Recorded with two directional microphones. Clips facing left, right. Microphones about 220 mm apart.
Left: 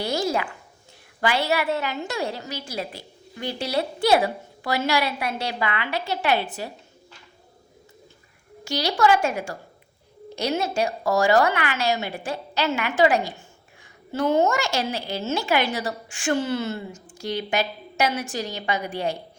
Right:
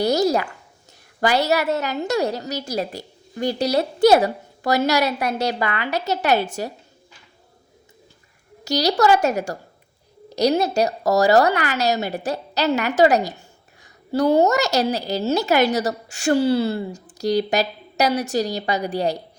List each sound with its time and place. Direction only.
0.0 s zipper: 40° right (ahead or behind)
1.2 s a woman's voice: 40° right (ahead or behind)
8.6 s a woman's voice: 40° right (ahead or behind)